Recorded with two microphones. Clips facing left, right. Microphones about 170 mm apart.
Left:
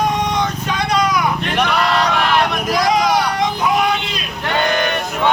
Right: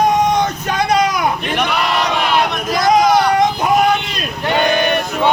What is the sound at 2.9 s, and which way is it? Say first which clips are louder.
Vehicle: right 8 dB; 50° right (ahead or behind).